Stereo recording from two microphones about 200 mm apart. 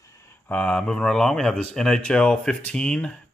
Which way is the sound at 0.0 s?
15° left (ahead or behind).